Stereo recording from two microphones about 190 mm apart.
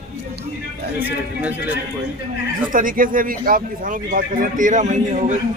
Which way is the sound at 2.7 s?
45° right (ahead or behind).